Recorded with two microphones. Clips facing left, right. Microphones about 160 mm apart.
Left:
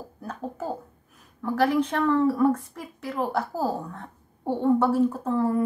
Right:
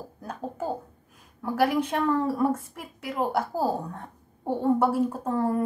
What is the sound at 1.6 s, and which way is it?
Speech, 10° right (ahead or behind).